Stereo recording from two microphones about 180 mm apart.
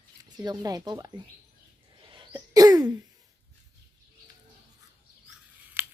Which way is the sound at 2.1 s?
25° right (ahead or behind).